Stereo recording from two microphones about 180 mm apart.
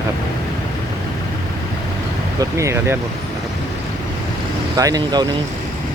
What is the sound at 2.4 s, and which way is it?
Speech, 15° right (ahead or behind).